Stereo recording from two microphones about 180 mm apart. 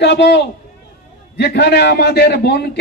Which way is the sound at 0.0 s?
70° left (ahead or behind).